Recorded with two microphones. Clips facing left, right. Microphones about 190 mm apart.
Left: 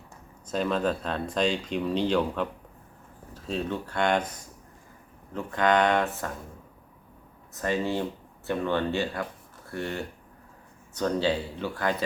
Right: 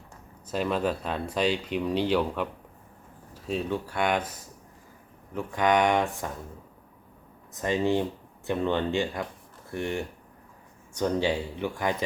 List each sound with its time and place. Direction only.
0.4 s speech: 10° right (ahead or behind)
7.5 s speech: 15° right (ahead or behind)